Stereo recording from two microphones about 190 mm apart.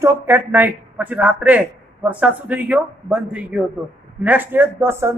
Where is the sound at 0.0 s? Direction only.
10° right (ahead or behind).